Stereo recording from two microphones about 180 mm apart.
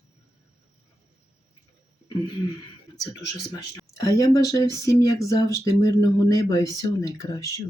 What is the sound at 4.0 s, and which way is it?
Speech, 20° left (ahead or behind).